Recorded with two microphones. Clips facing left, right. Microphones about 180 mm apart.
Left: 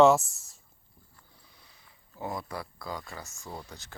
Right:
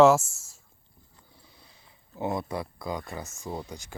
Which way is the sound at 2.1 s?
25° right (ahead or behind).